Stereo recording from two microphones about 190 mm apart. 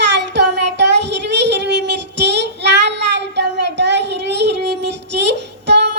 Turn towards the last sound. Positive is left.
turn(degrees=-65)  # may be behind; listen again after turning